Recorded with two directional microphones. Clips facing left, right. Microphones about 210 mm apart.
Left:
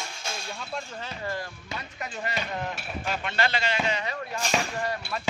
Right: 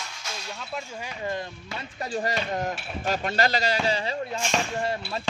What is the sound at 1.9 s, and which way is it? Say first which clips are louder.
A man's voice: right 6 dB; 35° right (ahead or behind).